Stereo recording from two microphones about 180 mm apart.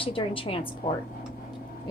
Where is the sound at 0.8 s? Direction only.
40° left (ahead or behind).